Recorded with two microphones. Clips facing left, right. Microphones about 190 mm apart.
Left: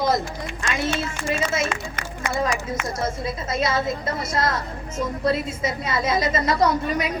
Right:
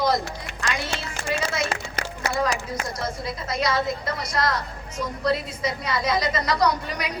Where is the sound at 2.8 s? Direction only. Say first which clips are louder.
Left 3 dB; 25° left (ahead or behind).